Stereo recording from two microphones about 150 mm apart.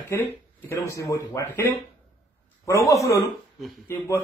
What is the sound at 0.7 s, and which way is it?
Speech, 15° left (ahead or behind).